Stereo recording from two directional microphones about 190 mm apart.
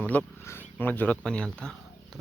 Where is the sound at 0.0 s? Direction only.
10° left (ahead or behind).